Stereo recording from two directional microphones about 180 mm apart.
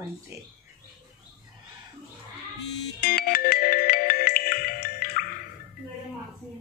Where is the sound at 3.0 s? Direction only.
55° left (ahead or behind).